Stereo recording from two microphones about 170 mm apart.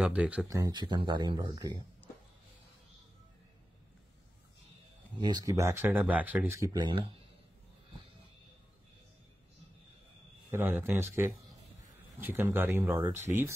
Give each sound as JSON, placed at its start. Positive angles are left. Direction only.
{"t": 0.0, "sound": "speech", "side_deg": -5}
{"t": 0.5, "sound": "speech", "side_deg": -20}
{"t": 5.2, "sound": "speech", "side_deg": -20}
{"t": 10.5, "sound": "speech", "side_deg": -10}